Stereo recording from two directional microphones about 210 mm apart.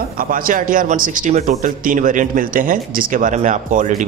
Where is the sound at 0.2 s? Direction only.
40° right (ahead or behind).